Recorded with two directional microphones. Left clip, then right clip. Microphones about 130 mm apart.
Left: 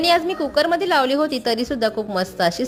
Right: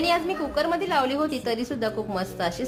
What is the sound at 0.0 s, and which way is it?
A woman's voice, 45° left (ahead or behind).